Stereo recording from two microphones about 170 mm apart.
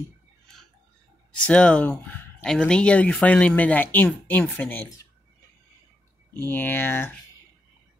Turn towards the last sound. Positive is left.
turn(degrees=15)  # may be behind; listen again after turning